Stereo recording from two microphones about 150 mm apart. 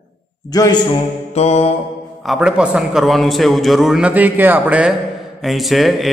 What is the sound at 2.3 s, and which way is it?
A man's voice, 5° right (ahead or behind).